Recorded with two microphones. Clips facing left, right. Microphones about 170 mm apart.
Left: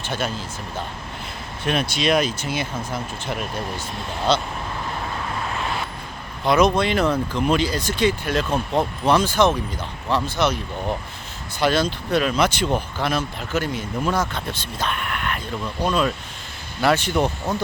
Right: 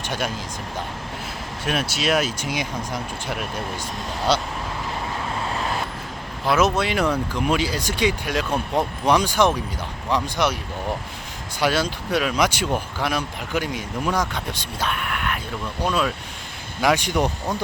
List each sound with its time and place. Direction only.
0.0 s speech: 10° right (ahead or behind)
1.6 s speech: 5° right (ahead or behind)
6.4 s speech: 5° right (ahead or behind)
11.6 s speech: 10° right (ahead or behind)